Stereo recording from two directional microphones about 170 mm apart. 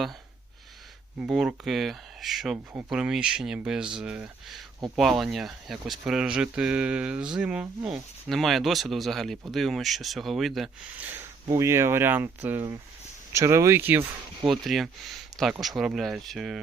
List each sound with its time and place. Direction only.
1.2 s speech: 5° right (ahead or behind)
14.6 s speech: centre (ahead or behind)